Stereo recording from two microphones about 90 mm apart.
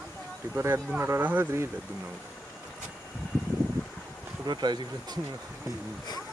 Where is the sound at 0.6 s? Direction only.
30° right (ahead or behind).